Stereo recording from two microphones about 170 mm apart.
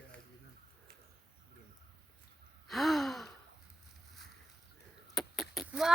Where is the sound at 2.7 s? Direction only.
Centre (ahead or behind).